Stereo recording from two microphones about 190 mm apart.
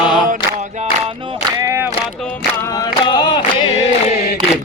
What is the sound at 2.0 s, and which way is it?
Music, 5° left (ahead or behind).